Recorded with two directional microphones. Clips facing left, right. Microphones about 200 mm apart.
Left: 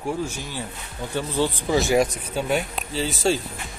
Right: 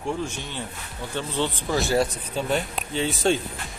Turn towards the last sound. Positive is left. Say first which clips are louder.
# even
turn(degrees=0)  # may be behind; listen again after turning